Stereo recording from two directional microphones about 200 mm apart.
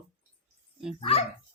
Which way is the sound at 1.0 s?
30° left (ahead or behind).